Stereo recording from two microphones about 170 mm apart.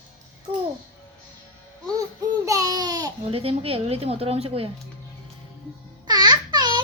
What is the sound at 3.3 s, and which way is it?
A woman's voice, 35° right (ahead or behind).